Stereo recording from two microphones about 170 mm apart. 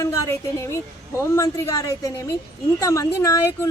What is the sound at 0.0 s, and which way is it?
A woman's voice, 15° left (ahead or behind).